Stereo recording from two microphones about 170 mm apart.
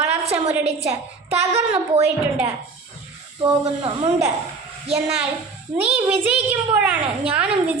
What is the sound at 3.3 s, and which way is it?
Speech, 30° right (ahead or behind).